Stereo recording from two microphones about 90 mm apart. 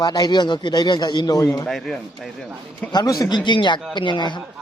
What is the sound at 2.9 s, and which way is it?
A man's voice, 45° left (ahead or behind).